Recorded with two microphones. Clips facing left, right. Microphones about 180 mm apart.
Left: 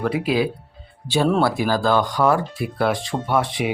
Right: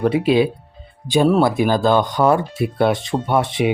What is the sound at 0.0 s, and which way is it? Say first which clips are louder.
Speech: right 5 dB; 25° right (ahead or behind).